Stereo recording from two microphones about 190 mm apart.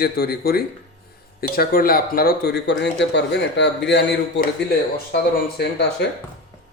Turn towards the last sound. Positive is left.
turn(degrees=60)  # may be behind; listen again after turning